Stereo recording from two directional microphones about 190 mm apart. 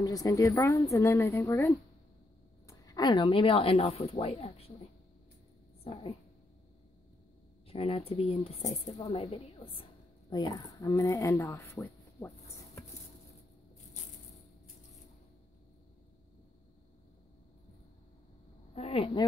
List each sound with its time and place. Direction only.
0.0 s speech: 20° left (ahead or behind)
5.9 s speech: 30° left (ahead or behind)
7.6 s a woman's voice: 30° left (ahead or behind); by 12.3 s 15° left (ahead or behind)
18.8 s a woman's voice: 30° left (ahead or behind)